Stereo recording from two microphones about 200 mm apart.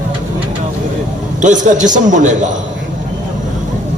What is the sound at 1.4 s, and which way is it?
A man's voice, 40° right (ahead or behind).